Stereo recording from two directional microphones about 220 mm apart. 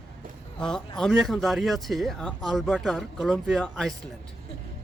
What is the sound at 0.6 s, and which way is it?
A man's voice, 5° left (ahead or behind).